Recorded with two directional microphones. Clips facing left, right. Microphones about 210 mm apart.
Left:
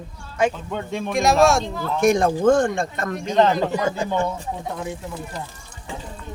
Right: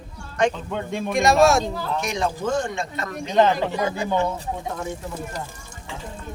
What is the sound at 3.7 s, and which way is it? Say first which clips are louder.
Speech: left 2 dB; 45° left (ahead or behind).